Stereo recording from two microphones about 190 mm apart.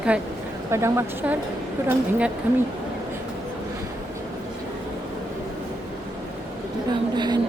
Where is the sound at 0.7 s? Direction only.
15° right (ahead or behind).